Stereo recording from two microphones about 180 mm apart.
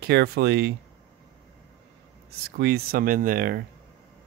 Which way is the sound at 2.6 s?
60° right (ahead or behind).